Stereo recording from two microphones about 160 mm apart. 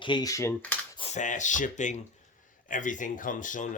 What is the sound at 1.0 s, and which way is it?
Speech, 45° left (ahead or behind).